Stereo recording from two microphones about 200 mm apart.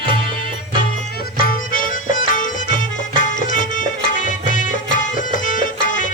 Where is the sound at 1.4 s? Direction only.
45° left (ahead or behind).